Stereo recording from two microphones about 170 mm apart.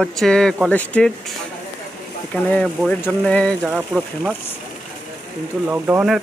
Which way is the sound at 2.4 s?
10° left (ahead or behind).